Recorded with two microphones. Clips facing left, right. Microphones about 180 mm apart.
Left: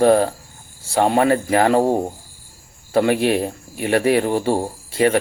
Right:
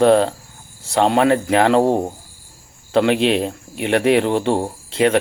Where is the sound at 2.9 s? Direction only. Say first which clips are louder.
Right 1 dB; 70° right (ahead or behind).